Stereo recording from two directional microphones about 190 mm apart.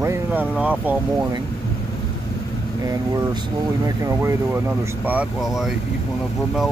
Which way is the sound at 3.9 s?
15° right (ahead or behind).